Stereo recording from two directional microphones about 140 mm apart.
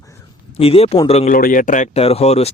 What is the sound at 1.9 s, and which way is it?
Speech, 45° left (ahead or behind).